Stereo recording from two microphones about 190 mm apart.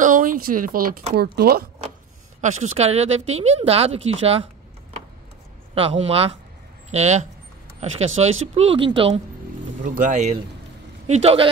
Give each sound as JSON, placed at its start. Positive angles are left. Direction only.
{"t": 0.0, "sound": "speech", "side_deg": -45}
{"t": 2.4, "sound": "speech", "side_deg": -40}
{"t": 5.8, "sound": "speech", "side_deg": -30}
{"t": 9.8, "sound": "speech", "side_deg": -40}